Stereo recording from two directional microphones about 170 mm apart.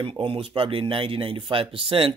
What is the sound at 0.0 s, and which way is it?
Speech, 30° right (ahead or behind).